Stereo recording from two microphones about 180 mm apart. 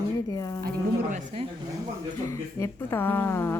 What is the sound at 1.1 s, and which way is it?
Speech, 35° right (ahead or behind).